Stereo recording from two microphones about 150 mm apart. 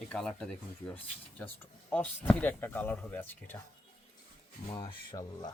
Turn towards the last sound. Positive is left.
turn(degrees=30)  # may be behind; listen again after turning